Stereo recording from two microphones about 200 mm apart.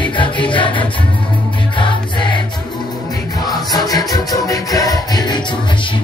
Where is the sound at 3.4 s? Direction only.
20° left (ahead or behind).